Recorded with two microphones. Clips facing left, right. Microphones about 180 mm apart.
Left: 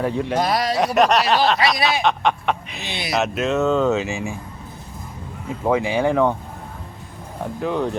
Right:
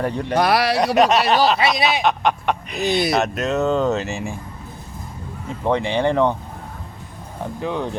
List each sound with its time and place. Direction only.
0.0 s speech: 5° left (ahead or behind)
0.3 s speech: 70° right (ahead or behind)
0.9 s speech: centre (ahead or behind)
1.5 s speech: 25° right (ahead or behind)
2.0 s speech: centre (ahead or behind)
2.8 s speech: 45° right (ahead or behind)
3.1 s speech: centre (ahead or behind)
5.6 s speech: 5° left (ahead or behind)
7.6 s speech: centre (ahead or behind)